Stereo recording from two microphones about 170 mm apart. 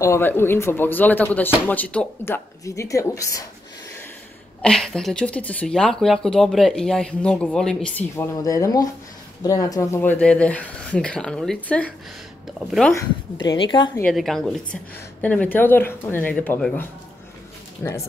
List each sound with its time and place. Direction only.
0.0 s speech: 15° left (ahead or behind)
4.6 s speech: 5° left (ahead or behind)
8.2 s a woman's voice: 20° left (ahead or behind); by 12.9 s centre (ahead or behind)
12.9 s a woman's voice: 25° left (ahead or behind)
14.0 s speech: centre (ahead or behind)